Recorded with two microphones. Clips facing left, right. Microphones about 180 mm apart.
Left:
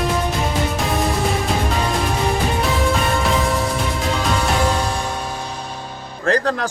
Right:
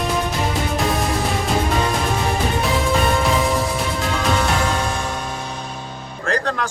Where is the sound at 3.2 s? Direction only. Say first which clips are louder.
Even; centre (ahead or behind).